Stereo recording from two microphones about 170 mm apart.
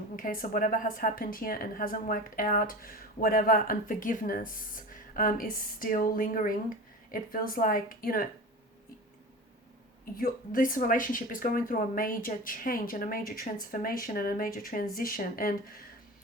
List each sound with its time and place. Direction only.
0.2 s speech: 55° left (ahead or behind)
10.2 s speech: 55° left (ahead or behind)